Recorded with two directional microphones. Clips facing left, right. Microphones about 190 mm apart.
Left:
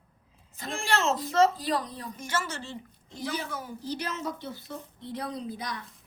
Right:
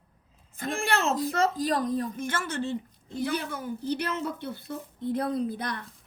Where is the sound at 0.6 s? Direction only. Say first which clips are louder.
Right 1 dB; 55° right (ahead or behind).